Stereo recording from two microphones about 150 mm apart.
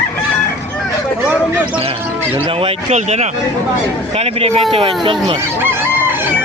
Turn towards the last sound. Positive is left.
turn(degrees=-40)  # may be behind; listen again after turning